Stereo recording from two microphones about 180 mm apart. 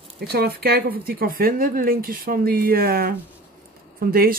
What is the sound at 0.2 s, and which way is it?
Speech, 60° right (ahead or behind).